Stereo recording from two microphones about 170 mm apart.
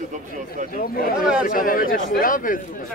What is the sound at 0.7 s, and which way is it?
Speech, 60° left (ahead or behind).